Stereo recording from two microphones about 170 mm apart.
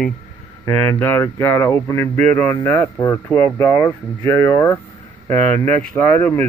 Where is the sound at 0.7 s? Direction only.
15° left (ahead or behind).